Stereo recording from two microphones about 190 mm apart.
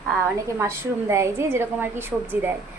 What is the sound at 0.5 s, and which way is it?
A woman's voice, 15° right (ahead or behind).